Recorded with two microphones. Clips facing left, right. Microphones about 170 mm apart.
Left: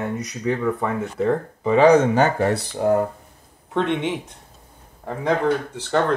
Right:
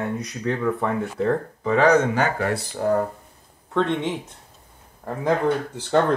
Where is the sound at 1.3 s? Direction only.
15° left (ahead or behind).